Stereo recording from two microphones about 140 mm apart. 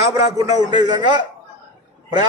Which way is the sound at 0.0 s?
25° right (ahead or behind).